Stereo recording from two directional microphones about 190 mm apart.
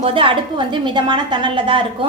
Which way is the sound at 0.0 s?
30° right (ahead or behind).